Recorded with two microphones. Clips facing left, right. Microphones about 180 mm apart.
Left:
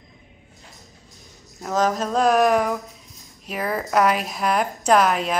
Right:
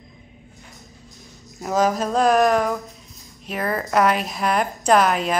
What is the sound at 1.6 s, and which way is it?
A woman's voice, 5° right (ahead or behind).